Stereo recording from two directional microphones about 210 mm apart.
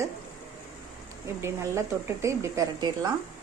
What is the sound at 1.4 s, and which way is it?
Speech, 15° right (ahead or behind).